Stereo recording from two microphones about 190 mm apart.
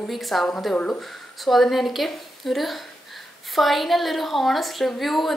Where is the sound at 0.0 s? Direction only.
Centre (ahead or behind).